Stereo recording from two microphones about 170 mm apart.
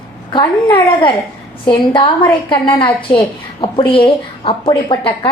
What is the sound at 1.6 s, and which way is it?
A woman's voice, 30° left (ahead or behind).